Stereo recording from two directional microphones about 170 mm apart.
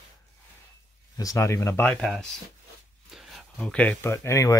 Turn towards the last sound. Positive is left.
turn(degrees=15)  # may be behind; listen again after turning